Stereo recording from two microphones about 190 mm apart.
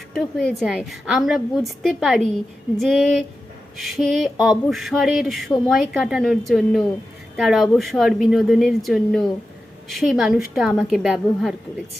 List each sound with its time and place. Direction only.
0.1 s speech: centre (ahead or behind)